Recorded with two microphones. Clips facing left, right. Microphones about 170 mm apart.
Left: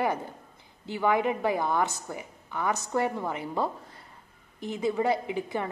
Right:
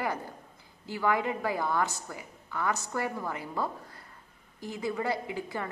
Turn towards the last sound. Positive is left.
turn(degrees=20)  # may be behind; listen again after turning